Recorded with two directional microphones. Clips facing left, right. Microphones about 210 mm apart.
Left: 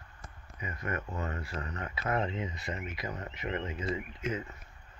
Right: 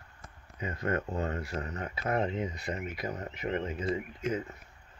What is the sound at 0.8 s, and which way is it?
Speech, 30° right (ahead or behind).